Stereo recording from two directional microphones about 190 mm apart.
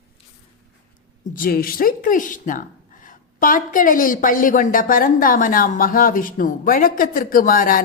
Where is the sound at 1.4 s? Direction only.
50° left (ahead or behind).